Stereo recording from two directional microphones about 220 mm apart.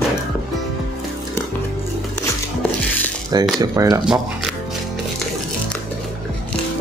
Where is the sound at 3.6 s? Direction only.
15° right (ahead or behind).